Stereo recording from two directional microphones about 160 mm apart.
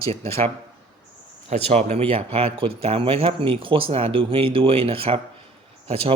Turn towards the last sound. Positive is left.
turn(degrees=-35)  # may be behind; listen again after turning